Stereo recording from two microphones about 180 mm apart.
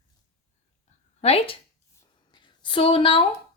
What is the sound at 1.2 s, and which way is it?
Speech, 35° left (ahead or behind).